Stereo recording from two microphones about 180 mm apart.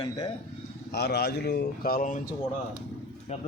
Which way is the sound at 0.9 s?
60° left (ahead or behind).